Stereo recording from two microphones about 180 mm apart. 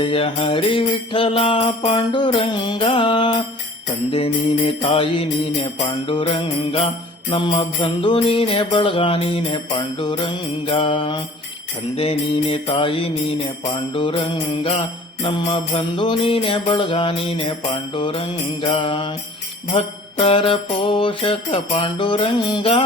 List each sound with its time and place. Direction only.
0.0 s jingle bell: 30° left (ahead or behind)
4.1 s music: 30° left (ahead or behind)
6.1 s jingle bell: 30° left (ahead or behind)
11.9 s music: 30° left (ahead or behind)
13.7 s jingle bell: 25° left (ahead or behind)